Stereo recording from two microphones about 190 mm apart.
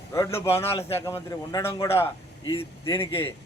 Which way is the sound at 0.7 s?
30° left (ahead or behind).